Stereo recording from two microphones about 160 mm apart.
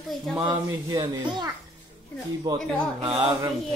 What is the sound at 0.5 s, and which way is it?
Speech, 30° right (ahead or behind).